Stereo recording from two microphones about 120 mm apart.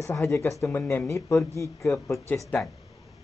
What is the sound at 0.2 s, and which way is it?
Speech, 25° left (ahead or behind).